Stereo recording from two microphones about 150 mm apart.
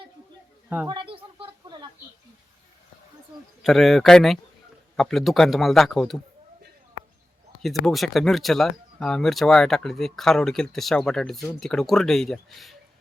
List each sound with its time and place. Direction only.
0.9 s a sound: 35° right (ahead or behind)
3.6 s speech: centre (ahead or behind)
7.9 s speech: centre (ahead or behind)